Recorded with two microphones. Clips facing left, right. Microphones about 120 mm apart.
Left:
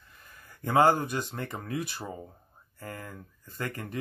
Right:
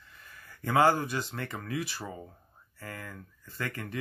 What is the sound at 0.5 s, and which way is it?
Speech, 20° left (ahead or behind).